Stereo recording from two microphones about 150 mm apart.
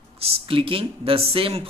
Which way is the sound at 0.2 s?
35° right (ahead or behind).